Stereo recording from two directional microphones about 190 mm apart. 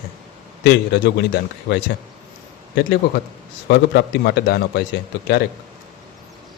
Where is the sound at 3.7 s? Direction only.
60° left (ahead or behind).